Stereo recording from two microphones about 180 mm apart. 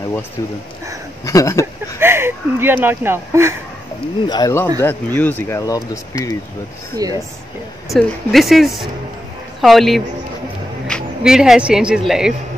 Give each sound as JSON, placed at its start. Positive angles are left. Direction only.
{"t": 1.2, "sound": "speech", "side_deg": 20}
{"t": 2.0, "sound": "a sound", "side_deg": -15}
{"t": 4.3, "sound": "speech", "side_deg": 20}
{"t": 7.0, "sound": "speech", "side_deg": -20}
{"t": 7.9, "sound": "speech", "side_deg": 0}